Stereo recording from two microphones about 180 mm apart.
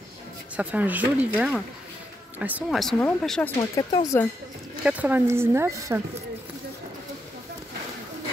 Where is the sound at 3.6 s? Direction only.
20° left (ahead or behind).